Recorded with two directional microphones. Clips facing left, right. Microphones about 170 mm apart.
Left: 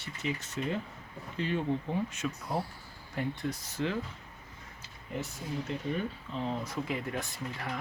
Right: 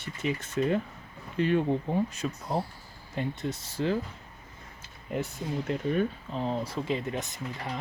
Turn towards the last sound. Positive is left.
turn(degrees=-20)  # may be behind; listen again after turning